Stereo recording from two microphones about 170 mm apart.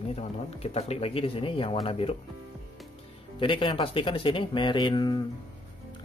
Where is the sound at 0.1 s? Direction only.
35° left (ahead or behind).